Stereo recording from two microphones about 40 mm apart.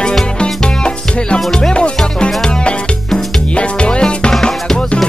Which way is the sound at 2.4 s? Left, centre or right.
Left.